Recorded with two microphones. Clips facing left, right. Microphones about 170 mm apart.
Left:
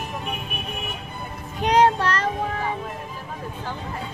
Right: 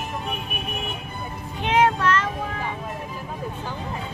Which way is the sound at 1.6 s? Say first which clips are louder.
Left 2 dB; 35° left (ahead or behind).